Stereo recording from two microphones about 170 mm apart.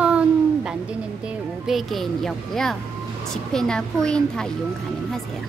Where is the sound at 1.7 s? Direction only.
Centre (ahead or behind).